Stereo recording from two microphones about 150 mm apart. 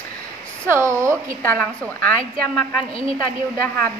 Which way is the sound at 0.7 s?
20° right (ahead or behind).